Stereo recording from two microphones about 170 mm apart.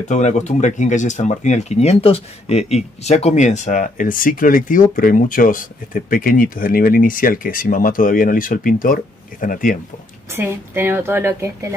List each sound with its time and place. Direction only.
0.1 s speech: 45° left (ahead or behind)
10.3 s a woman's voice: 10° right (ahead or behind)